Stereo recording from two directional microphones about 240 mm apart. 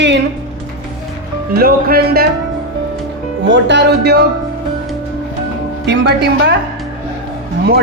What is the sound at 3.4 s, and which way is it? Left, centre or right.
Speech, right.